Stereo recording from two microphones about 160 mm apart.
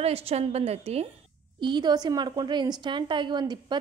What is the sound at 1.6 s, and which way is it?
A woman's voice, 30° right (ahead or behind).